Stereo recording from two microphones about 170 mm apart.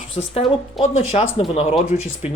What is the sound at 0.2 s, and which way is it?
Speech, 30° left (ahead or behind).